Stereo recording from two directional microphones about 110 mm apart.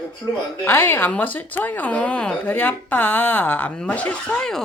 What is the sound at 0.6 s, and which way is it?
Speech, 20° left (ahead or behind).